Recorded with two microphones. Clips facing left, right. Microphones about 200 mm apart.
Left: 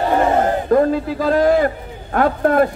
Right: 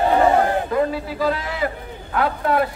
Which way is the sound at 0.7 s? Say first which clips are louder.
Left 6 dB; 45° left (ahead or behind).